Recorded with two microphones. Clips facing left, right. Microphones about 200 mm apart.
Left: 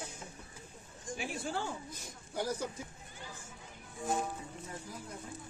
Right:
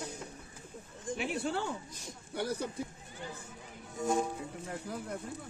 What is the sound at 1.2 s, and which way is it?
Speech, 65° right (ahead or behind).